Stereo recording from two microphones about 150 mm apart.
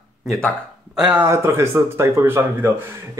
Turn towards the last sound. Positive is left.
turn(degrees=-15)  # may be behind; listen again after turning